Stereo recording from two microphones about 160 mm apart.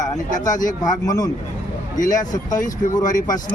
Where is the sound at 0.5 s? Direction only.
55° left (ahead or behind).